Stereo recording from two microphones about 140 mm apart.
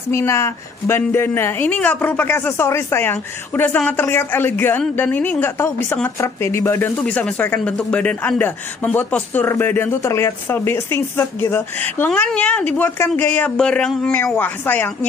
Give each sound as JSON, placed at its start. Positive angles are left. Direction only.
{"t": 0.1, "sound": "a woman's voice", "side_deg": 20}